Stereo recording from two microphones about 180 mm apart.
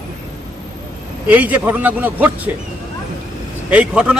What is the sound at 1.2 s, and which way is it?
Speech, 10° right (ahead or behind).